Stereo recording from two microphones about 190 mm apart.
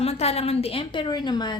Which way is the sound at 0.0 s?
35° left (ahead or behind).